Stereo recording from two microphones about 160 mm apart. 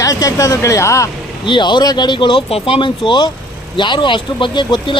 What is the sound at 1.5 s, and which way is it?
Speech, 30° left (ahead or behind).